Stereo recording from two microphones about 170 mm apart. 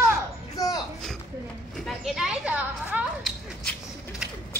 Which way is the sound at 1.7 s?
Centre (ahead or behind).